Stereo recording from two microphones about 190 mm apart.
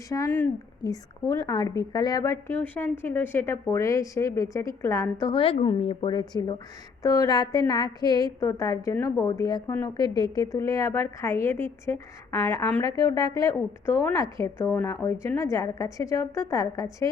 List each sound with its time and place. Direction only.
0.1 s a woman's voice: 15° left (ahead or behind)
5.2 s a woman's voice: 25° left (ahead or behind)